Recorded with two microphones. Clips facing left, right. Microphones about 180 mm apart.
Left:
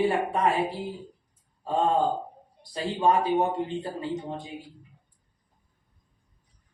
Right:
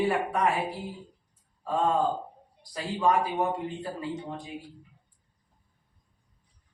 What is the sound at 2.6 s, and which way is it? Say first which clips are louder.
Speech: left 2 dB; 25° left (ahead or behind).